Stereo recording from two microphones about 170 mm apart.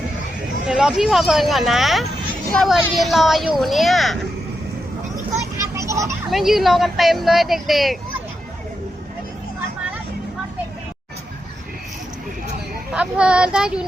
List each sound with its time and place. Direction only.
0.7 s speech: 5° right (ahead or behind)
5.5 s a sound: 20° right (ahead or behind)
6.2 s speech: centre (ahead or behind)
12.9 s speech: 5° right (ahead or behind)